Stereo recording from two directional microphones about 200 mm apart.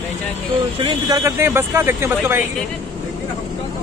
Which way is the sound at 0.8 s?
15° right (ahead or behind).